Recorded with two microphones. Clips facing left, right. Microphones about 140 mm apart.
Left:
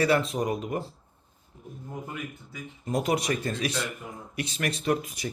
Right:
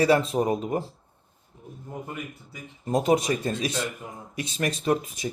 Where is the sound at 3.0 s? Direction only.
25° right (ahead or behind).